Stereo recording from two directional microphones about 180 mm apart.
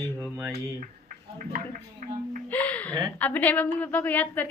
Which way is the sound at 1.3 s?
45° right (ahead or behind).